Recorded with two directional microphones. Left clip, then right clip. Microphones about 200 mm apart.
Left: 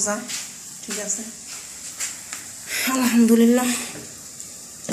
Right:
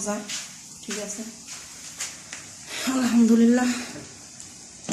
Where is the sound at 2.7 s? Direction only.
15° right (ahead or behind).